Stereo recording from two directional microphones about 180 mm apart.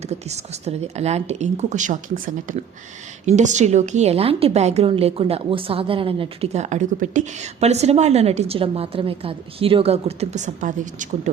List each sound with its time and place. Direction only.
0.1 s a woman's voice: 35° right (ahead or behind)